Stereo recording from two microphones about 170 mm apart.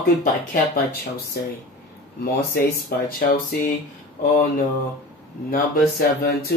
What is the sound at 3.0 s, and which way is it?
Speech, 60° left (ahead or behind).